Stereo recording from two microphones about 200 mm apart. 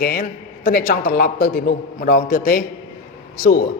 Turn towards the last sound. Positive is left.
turn(degrees=45)  # may be behind; listen again after turning